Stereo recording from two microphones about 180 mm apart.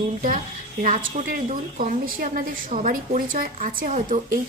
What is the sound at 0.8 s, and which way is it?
A woman's voice, 45° right (ahead or behind).